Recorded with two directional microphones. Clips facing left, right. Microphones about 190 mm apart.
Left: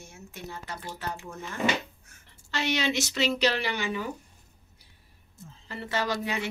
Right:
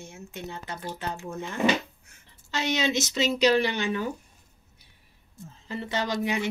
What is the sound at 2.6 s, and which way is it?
Speech, 20° right (ahead or behind).